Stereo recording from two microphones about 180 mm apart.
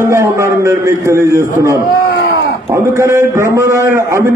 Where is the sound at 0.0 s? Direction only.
15° right (ahead or behind).